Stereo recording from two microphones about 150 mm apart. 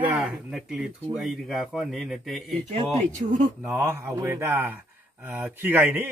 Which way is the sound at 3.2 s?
50° right (ahead or behind).